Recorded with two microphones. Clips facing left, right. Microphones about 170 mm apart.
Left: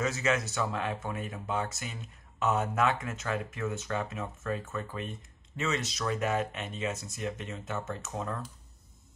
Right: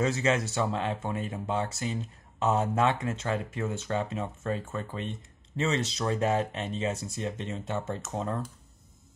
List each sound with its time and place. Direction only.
0.0 s speech: 30° right (ahead or behind)